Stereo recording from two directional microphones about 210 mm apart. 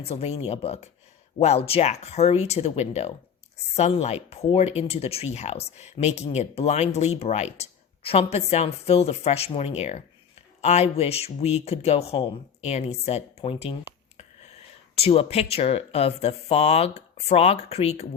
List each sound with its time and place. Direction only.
0.0 s speech: 30° left (ahead or behind)
14.9 s speech: 30° left (ahead or behind)